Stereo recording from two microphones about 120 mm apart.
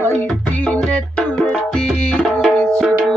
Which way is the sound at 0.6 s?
5° left (ahead or behind).